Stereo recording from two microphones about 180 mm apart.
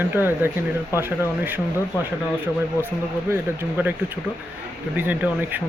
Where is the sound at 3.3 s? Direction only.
10° right (ahead or behind).